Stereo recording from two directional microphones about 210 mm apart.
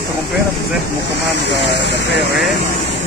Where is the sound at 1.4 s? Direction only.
55° left (ahead or behind).